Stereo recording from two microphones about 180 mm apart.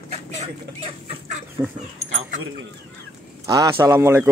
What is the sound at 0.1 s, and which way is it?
Vehicle, 35° right (ahead or behind).